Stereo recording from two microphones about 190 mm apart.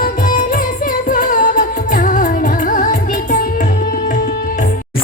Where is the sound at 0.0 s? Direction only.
45° left (ahead or behind).